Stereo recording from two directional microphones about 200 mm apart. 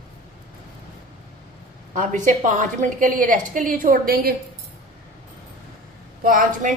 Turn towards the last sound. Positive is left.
turn(degrees=-45)  # may be behind; listen again after turning